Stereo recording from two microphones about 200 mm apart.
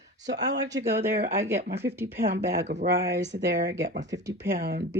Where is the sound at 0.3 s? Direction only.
55° right (ahead or behind).